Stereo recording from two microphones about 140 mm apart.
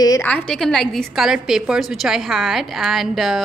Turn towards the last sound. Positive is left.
turn(degrees=0)  # may be behind; listen again after turning